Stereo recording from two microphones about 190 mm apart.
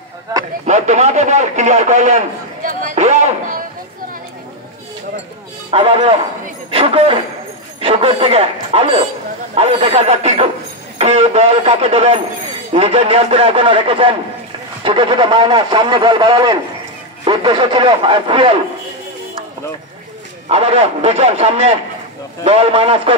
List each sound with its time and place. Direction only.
0.3 s speech: 20° right (ahead or behind)
0.7 s a man's voice: 35° right (ahead or behind)
5.7 s a man's voice: 30° right (ahead or behind)
11.0 s radio: 35° right (ahead or behind)
12.7 s a man's voice: 35° right (ahead or behind)
20.4 s a man's voice: 30° right (ahead or behind)